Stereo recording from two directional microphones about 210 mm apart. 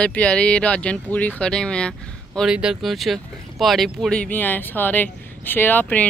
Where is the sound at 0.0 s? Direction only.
5° left (ahead or behind).